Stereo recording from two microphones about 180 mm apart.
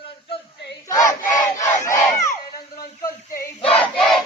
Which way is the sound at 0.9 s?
45° left (ahead or behind).